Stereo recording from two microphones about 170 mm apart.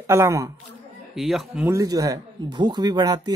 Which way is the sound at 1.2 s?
Centre (ahead or behind).